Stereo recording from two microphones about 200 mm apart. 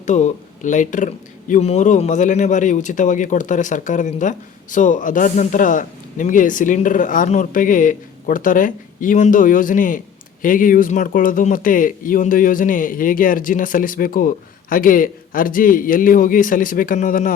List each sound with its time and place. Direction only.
0.0 s speech: 35° left (ahead or behind)